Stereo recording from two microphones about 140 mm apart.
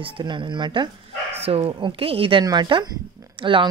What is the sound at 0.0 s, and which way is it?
Speech, 35° right (ahead or behind).